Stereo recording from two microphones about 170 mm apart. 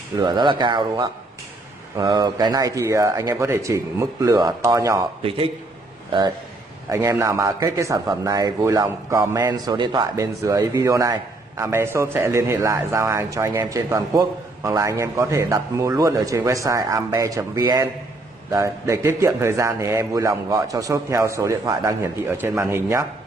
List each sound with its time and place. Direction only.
0.2 s speech: 25° right (ahead or behind)
5.2 s a man's voice: 35° right (ahead or behind)
6.9 s a man's voice: 15° right (ahead or behind)